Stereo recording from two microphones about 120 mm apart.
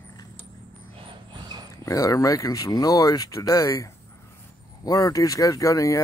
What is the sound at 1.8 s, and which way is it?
Speech, 25° left (ahead or behind).